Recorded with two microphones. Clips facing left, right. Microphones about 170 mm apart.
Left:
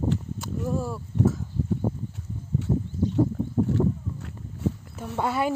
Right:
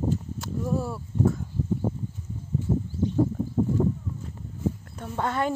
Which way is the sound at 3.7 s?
75° left (ahead or behind).